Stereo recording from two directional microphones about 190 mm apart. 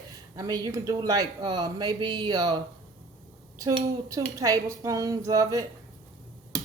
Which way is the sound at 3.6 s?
15° right (ahead or behind).